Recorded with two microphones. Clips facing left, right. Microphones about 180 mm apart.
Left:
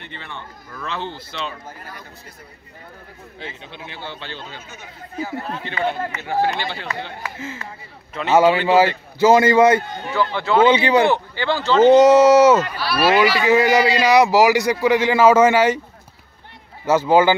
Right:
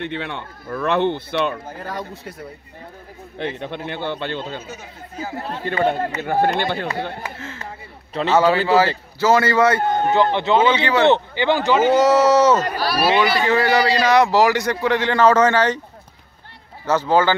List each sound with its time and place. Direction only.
0.0 s speech: 70° right (ahead or behind); by 2.3 s 90° right
3.3 s speech: 60° right (ahead or behind)
5.2 s speech: 40° right (ahead or behind)
8.2 s speech: 35° right (ahead or behind)
9.2 s a man's voice: 15° left (ahead or behind)
9.8 s speech: 50° right (ahead or behind)
10.1 s a man's voice: 20° right (ahead or behind)
10.7 s a man's voice: 15° left (ahead or behind)
11.1 s speech: 20° right (ahead or behind)
11.9 s a man's voice: 15° left (ahead or behind)
12.6 s speech: 40° right (ahead or behind)
13.5 s a man's voice: 10° left (ahead or behind)
16.8 s a man's voice: 10° left (ahead or behind)